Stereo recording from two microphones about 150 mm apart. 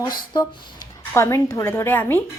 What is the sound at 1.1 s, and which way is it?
A woman's voice, 15° left (ahead or behind).